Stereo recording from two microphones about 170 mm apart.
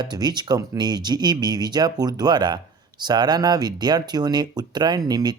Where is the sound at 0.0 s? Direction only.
25° right (ahead or behind).